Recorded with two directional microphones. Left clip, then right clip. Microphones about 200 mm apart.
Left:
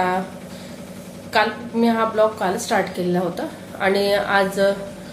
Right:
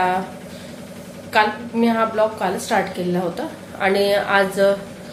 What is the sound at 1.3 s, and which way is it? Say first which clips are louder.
A woman's voice: right 2 dB; 5° right (ahead or behind).